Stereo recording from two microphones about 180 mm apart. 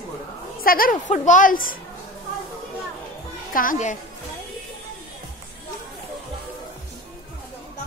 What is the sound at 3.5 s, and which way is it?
Speech, 50° left (ahead or behind).